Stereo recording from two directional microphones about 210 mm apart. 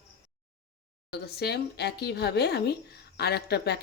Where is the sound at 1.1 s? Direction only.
50° left (ahead or behind).